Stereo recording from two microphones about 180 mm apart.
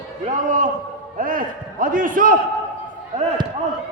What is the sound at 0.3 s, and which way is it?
A man's voice, 45° right (ahead or behind).